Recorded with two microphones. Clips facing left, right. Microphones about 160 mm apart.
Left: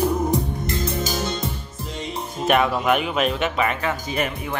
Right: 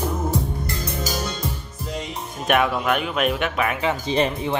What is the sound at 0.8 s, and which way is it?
Music, 25° left (ahead or behind).